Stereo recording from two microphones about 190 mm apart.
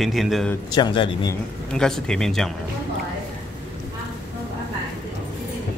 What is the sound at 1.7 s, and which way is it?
Speech, 5° left (ahead or behind).